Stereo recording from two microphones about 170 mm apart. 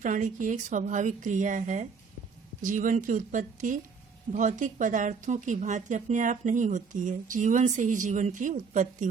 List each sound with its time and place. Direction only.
0.0 s a woman's voice: 50° right (ahead or behind)